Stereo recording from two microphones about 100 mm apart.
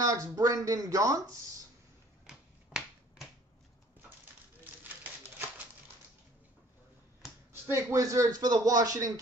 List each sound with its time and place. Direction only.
0.0 s a man's voice: 35° right (ahead or behind)
2.2 s finger snapping: 5° right (ahead or behind)
7.5 s a man's voice: 25° right (ahead or behind)